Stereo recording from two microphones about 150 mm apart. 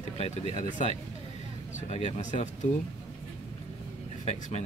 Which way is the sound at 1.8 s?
50° left (ahead or behind).